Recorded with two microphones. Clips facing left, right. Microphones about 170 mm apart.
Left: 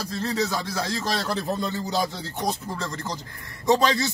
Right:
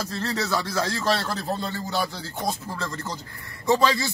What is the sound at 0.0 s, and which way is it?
Speech, 15° left (ahead or behind).